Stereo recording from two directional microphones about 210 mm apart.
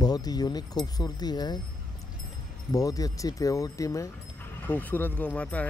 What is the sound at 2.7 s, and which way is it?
Speech, 15° left (ahead or behind).